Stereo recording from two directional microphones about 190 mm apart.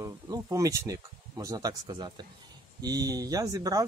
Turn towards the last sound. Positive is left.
turn(degrees=-20)  # may be behind; listen again after turning